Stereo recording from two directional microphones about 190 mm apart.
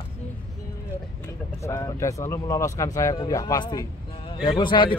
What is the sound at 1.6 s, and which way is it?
Speech, 15° left (ahead or behind).